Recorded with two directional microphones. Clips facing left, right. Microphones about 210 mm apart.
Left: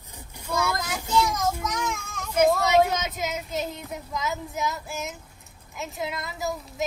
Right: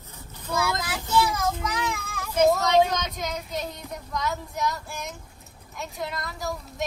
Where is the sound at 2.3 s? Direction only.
5° left (ahead or behind).